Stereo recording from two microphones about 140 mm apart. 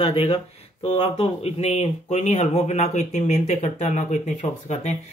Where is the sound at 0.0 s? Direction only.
45° left (ahead or behind).